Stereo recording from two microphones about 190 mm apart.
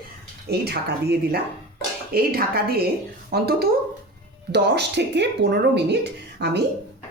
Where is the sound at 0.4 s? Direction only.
55° right (ahead or behind).